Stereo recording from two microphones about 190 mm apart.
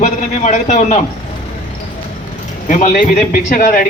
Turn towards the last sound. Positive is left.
turn(degrees=45)  # may be behind; listen again after turning